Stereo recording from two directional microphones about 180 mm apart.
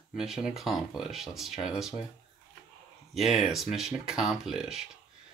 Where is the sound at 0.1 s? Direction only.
5° right (ahead or behind).